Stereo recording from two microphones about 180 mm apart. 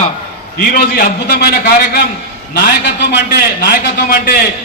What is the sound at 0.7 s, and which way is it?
A man's voice, 55° left (ahead or behind).